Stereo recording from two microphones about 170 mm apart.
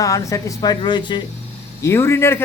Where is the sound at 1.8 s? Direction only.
15° left (ahead or behind).